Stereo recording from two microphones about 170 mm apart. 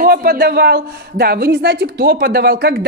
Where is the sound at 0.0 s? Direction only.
60° right (ahead or behind).